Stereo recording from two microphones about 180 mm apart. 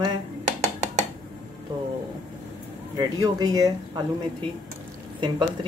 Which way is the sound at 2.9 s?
20° right (ahead or behind).